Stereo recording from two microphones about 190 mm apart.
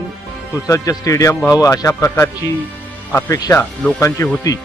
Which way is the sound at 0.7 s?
20° left (ahead or behind).